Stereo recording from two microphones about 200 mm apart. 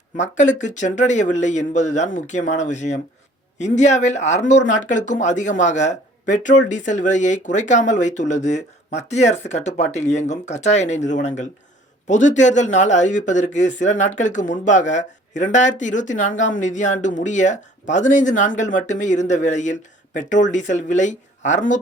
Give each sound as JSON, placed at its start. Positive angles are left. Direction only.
{"t": 0.2, "sound": "speech", "side_deg": 35}